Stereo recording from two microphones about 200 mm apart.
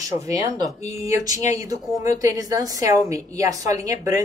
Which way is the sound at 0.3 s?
20° right (ahead or behind).